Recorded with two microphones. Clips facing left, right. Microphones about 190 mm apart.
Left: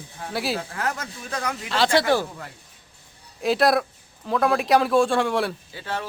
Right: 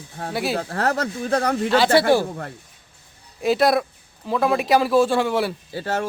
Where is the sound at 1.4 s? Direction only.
40° right (ahead or behind).